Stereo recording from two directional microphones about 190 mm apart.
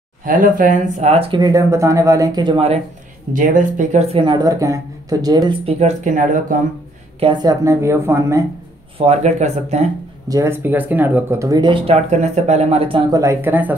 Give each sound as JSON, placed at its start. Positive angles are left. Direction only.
{"t": 0.2, "sound": "speech", "side_deg": -45}
{"t": 1.4, "sound": "speech", "side_deg": -15}
{"t": 3.3, "sound": "speech", "side_deg": -45}
{"t": 5.8, "sound": "speech", "side_deg": -40}
{"t": 7.2, "sound": "speech", "side_deg": -25}
{"t": 8.9, "sound": "speech", "side_deg": -35}
{"t": 10.2, "sound": "speech", "side_deg": -15}